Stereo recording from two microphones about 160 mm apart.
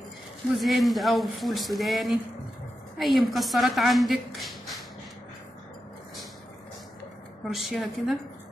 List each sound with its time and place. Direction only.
0.6 s a woman's voice: centre (ahead or behind)
7.4 s speech: centre (ahead or behind)